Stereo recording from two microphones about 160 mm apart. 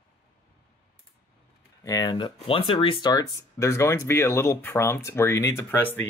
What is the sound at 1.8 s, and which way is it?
Speech, 20° left (ahead or behind).